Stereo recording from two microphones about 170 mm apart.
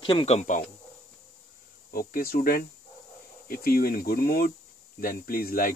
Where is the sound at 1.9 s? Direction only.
60° left (ahead or behind).